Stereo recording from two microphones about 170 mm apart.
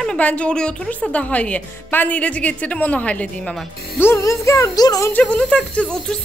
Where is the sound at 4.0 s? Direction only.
15° left (ahead or behind).